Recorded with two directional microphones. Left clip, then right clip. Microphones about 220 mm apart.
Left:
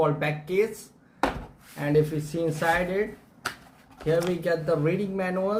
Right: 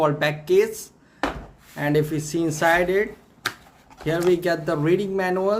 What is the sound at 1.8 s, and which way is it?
Speech, 50° right (ahead or behind).